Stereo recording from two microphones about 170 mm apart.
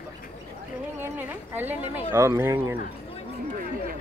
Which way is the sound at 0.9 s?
10° right (ahead or behind).